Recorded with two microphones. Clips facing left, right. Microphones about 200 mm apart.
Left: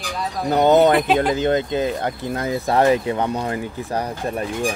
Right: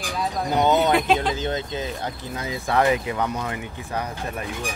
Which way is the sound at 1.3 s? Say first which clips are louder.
Left 7 dB; 55° left (ahead or behind).